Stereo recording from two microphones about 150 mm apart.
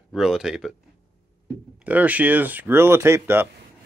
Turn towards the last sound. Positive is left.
turn(degrees=-15)  # may be behind; listen again after turning